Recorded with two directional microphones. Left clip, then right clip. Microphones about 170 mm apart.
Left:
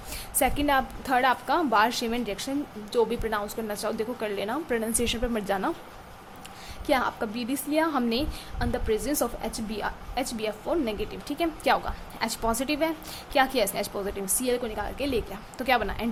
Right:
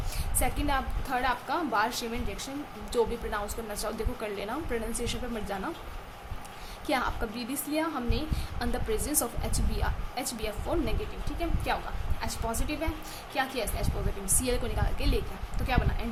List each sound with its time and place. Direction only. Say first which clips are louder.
0.3 s a woman's voice: left 7 dB; 30° left (ahead or behind)
6.8 s a woman's voice: left 4 dB; 25° left (ahead or behind)
8.5 s a woman's voice: left 5 dB; 20° left (ahead or behind)
11.3 s a woman's voice: left 8 dB; 35° left (ahead or behind)
14.4 s a woman's voice: left 5 dB; 20° left (ahead or behind)